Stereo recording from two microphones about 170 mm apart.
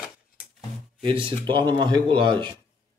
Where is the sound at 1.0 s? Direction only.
30° right (ahead or behind).